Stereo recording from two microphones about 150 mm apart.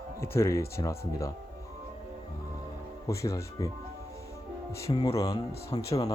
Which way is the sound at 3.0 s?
20° left (ahead or behind).